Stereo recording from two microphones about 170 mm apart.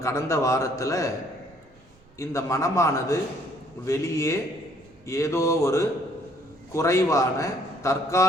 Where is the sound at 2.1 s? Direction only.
15° left (ahead or behind).